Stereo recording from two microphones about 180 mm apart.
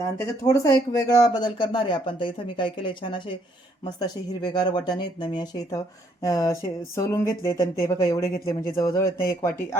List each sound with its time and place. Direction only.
0.0 s speech: 20° left (ahead or behind)
9.0 s speech: 55° left (ahead or behind)